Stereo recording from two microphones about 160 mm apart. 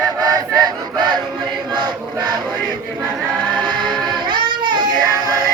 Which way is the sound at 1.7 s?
30° right (ahead or behind).